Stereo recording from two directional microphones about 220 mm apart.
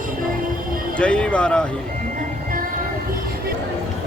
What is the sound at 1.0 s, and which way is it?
Speech, 5° left (ahead or behind).